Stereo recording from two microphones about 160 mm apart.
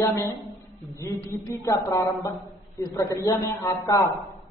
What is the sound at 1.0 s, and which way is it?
Speech, 20° left (ahead or behind).